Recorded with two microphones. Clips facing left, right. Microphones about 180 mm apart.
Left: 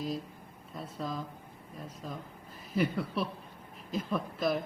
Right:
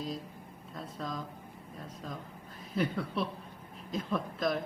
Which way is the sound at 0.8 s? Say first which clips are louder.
Left 2 dB; 5° left (ahead or behind).